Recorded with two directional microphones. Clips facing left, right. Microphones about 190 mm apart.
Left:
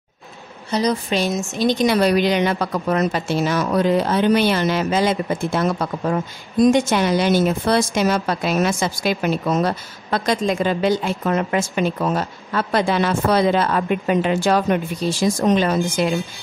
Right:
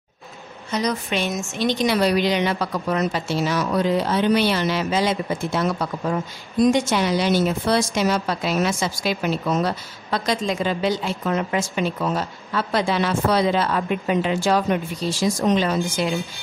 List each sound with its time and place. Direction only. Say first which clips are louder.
0.7 s a woman's voice: left 4 dB; 35° left (ahead or behind); by 16.1 s 50° left (ahead or behind)